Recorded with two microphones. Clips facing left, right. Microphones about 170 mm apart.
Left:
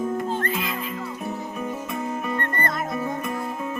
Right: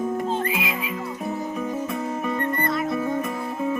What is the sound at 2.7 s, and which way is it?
Music, 45° left (ahead or behind).